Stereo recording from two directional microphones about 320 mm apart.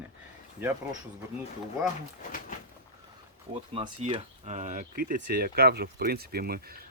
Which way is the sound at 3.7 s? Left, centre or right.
Centre.